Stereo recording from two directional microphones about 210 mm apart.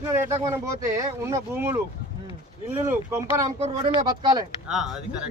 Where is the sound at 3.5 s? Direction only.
30° right (ahead or behind).